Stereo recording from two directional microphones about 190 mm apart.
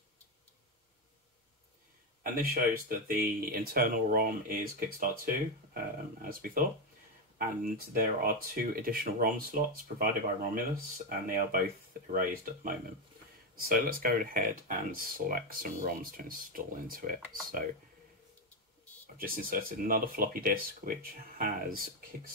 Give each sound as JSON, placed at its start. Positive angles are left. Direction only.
{"t": 2.5, "sound": "speech", "side_deg": -50}
{"t": 19.1, "sound": "speech", "side_deg": -50}